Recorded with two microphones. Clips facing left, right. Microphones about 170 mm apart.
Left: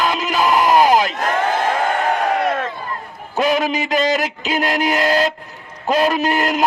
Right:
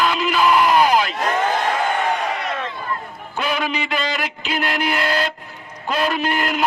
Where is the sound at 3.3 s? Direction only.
40° left (ahead or behind).